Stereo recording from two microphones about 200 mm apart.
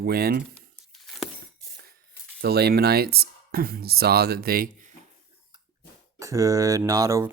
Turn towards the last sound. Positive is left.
turn(degrees=-15)  # may be behind; listen again after turning